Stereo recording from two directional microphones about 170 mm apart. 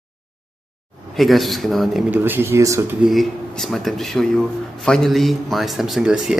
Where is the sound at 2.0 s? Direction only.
10° right (ahead or behind).